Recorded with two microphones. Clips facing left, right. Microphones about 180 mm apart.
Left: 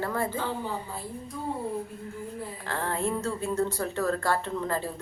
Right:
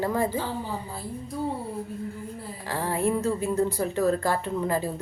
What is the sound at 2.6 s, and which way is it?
A woman's voice, 10° right (ahead or behind).